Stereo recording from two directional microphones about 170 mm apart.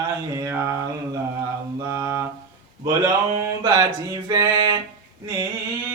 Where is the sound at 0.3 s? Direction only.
15° right (ahead or behind).